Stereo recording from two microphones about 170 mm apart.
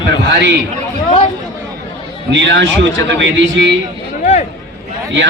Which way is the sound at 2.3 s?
90° right.